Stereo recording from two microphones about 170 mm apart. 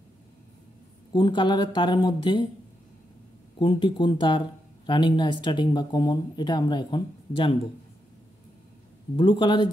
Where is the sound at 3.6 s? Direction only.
30° left (ahead or behind).